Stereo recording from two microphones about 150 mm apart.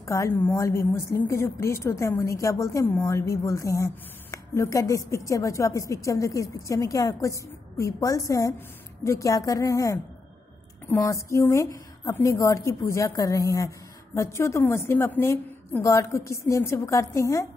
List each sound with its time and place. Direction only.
0.0 s a woman's voice: 20° left (ahead or behind)